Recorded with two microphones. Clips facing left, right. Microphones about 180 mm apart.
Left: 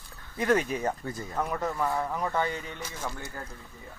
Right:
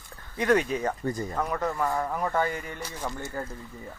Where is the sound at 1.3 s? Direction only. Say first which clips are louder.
Right 2 dB; 5° left (ahead or behind); by 3.3 s 15° right (ahead or behind).